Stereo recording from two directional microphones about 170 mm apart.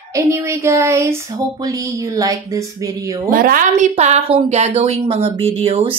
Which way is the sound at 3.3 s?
55° right (ahead or behind).